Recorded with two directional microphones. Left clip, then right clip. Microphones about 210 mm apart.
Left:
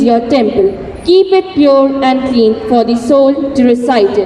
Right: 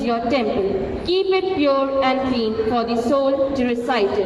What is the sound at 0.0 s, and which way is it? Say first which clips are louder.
A woman's voice: left 10 dB; 30° left (ahead or behind).